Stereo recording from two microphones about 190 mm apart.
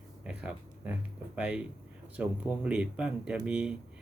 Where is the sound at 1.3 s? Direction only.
5° right (ahead or behind).